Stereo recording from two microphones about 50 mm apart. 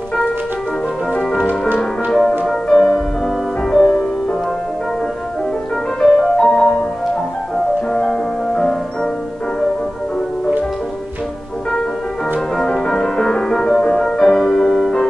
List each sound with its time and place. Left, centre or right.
1.1 s music: centre
5.9 s music: centre
7.9 s music: centre
12.8 s music: centre